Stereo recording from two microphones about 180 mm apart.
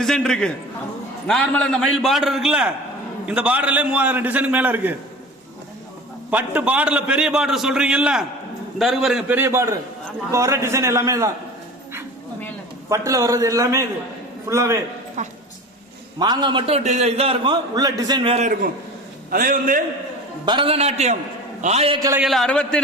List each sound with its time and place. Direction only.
0.0 s a man's voice: 5° left (ahead or behind)
6.3 s a man's voice: 10° right (ahead or behind)
13.1 s a man's voice: 20° right (ahead or behind)
15.2 s a man's voice: 40° right (ahead or behind)
16.1 s a man's voice: 25° right (ahead or behind)
19.3 s a man's voice: 50° right (ahead or behind)
20.4 s a man's voice: 25° right (ahead or behind)
22.2 s a man's voice: centre (ahead or behind)